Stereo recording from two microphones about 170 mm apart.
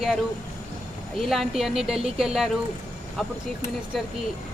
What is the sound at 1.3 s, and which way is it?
Speech, centre (ahead or behind).